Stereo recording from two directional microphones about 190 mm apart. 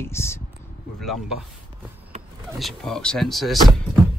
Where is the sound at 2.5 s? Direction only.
Centre (ahead or behind).